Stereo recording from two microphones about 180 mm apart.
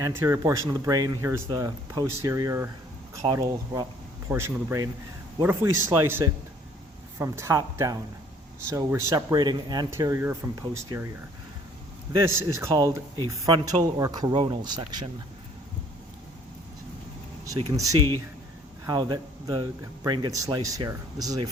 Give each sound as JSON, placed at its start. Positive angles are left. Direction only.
{"t": 0.0, "sound": "speech", "side_deg": -15}
{"t": 12.1, "sound": "speech", "side_deg": -15}
{"t": 18.9, "sound": "speech", "side_deg": -25}